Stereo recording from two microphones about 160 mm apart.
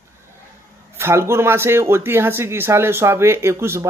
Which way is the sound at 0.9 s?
15° right (ahead or behind).